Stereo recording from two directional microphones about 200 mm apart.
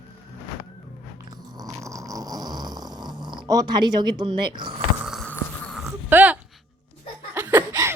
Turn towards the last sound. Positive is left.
turn(degrees=-15)  # may be behind; listen again after turning